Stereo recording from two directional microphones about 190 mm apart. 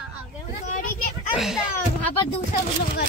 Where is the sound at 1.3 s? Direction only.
Centre (ahead or behind).